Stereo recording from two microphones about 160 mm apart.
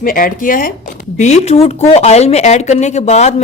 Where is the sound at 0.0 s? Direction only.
60° left (ahead or behind).